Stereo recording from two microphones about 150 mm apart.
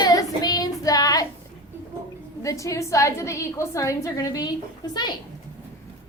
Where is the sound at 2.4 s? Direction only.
20° left (ahead or behind).